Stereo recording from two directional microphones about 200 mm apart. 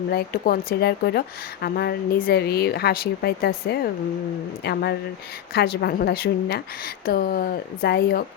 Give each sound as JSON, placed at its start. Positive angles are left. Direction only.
{"t": 0.1, "sound": "a woman's voice", "side_deg": 50}